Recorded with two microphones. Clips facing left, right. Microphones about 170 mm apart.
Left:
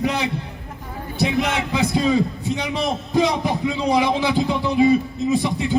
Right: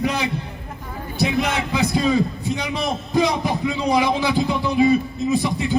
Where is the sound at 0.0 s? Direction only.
25° left (ahead or behind).